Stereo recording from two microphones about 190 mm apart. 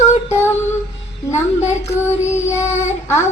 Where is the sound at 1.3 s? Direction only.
35° left (ahead or behind).